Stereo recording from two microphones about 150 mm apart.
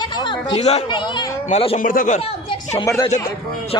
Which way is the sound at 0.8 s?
30° left (ahead or behind).